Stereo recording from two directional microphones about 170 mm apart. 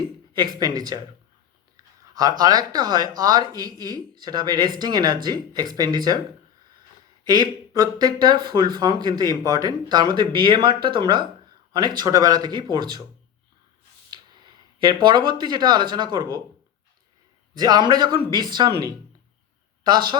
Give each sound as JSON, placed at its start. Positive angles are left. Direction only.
{"t": 0.3, "sound": "speech", "side_deg": -25}
{"t": 1.7, "sound": "a sound", "side_deg": -25}
{"t": 2.4, "sound": "speech", "side_deg": -25}
{"t": 7.3, "sound": "speech", "side_deg": -25}
{"t": 14.8, "sound": "speech", "side_deg": -25}
{"t": 17.5, "sound": "speech", "side_deg": -25}